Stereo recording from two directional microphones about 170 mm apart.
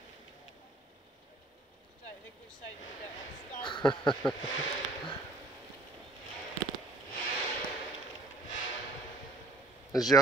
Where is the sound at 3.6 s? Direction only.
30° left (ahead or behind).